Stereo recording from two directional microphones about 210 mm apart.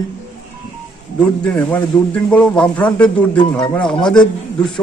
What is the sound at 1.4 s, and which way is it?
A man's voice, 5° left (ahead or behind).